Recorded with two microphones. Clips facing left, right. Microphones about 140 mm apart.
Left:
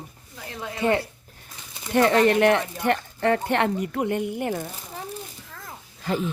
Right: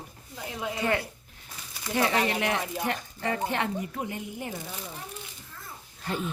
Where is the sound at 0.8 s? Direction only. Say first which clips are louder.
Left 6 dB; 25° left (ahead or behind).